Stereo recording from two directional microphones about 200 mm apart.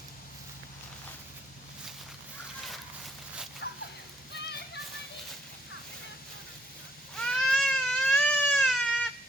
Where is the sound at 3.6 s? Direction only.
60° left (ahead or behind).